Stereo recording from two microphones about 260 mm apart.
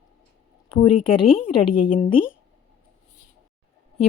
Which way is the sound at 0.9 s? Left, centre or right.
Left.